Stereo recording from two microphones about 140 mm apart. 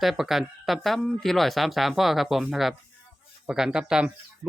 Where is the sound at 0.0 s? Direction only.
Centre (ahead or behind).